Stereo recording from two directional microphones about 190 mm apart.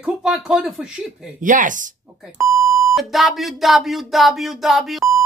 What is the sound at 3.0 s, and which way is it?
Speech, centre (ahead or behind).